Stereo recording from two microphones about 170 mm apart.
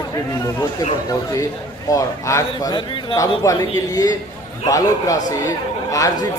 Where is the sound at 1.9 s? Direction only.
20° left (ahead or behind).